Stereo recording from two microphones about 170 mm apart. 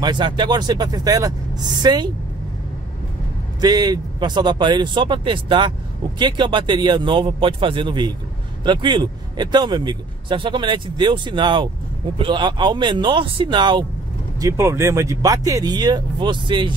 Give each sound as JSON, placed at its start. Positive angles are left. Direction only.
{"t": 0.0, "sound": "a man's voice", "side_deg": -25}
{"t": 3.6, "sound": "a man's voice", "side_deg": -25}
{"t": 14.4, "sound": "a man's voice", "side_deg": -15}